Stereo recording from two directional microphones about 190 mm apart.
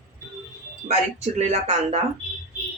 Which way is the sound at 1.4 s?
35° right (ahead or behind).